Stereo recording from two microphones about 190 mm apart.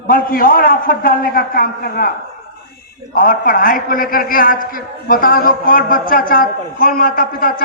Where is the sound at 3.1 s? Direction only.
45° left (ahead or behind).